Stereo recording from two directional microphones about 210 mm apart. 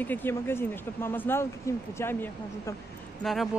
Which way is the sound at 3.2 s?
Centre (ahead or behind).